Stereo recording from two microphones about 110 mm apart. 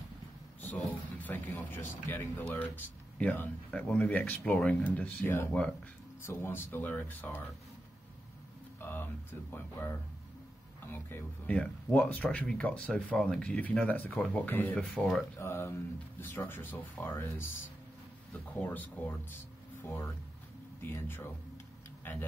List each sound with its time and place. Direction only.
0.6 s speech: 15° left (ahead or behind)
5.5 s speech: 10° left (ahead or behind)
6.2 s speech: 20° left (ahead or behind)
8.8 s speech: 20° left (ahead or behind)
15.3 s speech: 25° left (ahead or behind)
18.6 s speech: 15° left (ahead or behind)